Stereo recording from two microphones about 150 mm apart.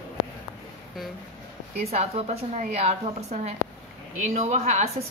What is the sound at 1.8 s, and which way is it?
A woman's voice, 45° right (ahead or behind).